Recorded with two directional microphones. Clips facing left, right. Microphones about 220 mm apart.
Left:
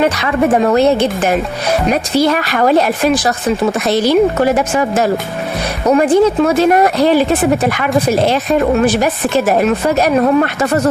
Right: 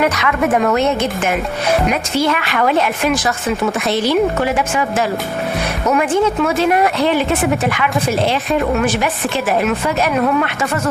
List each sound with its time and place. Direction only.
0.0 s speech: 30° left (ahead or behind)